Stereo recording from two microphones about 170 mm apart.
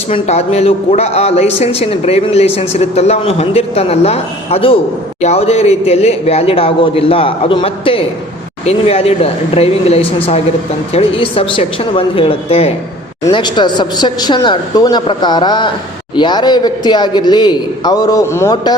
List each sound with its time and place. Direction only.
0.1 s a man's voice: 40° left (ahead or behind); by 18.5 s 15° left (ahead or behind)